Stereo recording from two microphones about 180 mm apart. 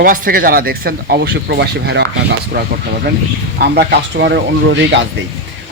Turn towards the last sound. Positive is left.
turn(degrees=-75)  # may be behind; listen again after turning